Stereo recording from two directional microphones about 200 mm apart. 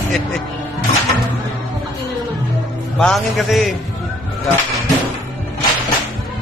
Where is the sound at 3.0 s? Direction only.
Centre (ahead or behind).